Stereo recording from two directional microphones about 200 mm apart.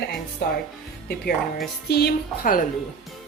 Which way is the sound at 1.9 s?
55° left (ahead or behind).